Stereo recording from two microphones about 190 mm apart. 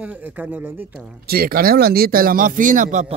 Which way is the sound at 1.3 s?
50° right (ahead or behind).